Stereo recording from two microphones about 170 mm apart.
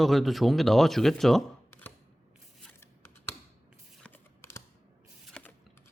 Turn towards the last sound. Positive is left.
turn(degrees=5)  # may be behind; listen again after turning